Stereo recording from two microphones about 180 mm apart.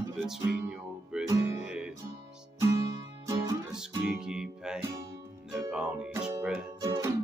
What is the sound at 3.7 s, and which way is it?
Music, 5° right (ahead or behind).